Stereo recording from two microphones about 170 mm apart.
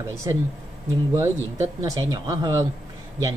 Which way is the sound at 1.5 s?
20° right (ahead or behind).